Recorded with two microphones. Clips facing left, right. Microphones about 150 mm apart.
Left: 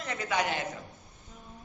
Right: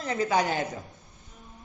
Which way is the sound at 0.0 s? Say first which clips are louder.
Right 5 dB; 30° right (ahead or behind).